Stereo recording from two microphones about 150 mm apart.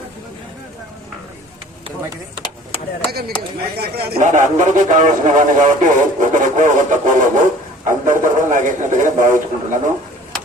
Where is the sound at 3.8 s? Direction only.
90° right.